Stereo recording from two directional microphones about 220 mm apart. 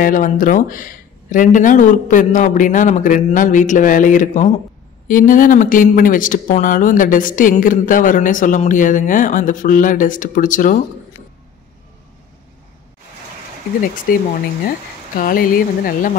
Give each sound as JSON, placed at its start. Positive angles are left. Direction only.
{"t": 0.0, "sound": "speech", "side_deg": 35}
{"t": 14.1, "sound": "speech", "side_deg": 40}